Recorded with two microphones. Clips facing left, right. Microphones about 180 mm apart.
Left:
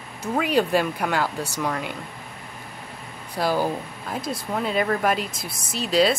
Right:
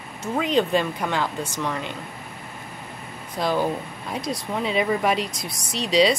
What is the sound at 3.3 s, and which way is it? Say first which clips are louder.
Speech: even; 5° left (ahead or behind).